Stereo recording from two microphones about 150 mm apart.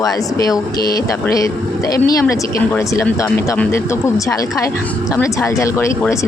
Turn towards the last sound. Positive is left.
turn(degrees=20)  # may be behind; listen again after turning